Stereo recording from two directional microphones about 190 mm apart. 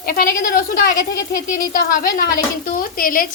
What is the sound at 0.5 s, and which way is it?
A woman's voice, 50° left (ahead or behind).